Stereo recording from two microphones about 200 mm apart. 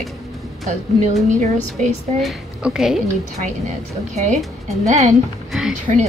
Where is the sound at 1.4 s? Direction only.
35° right (ahead or behind).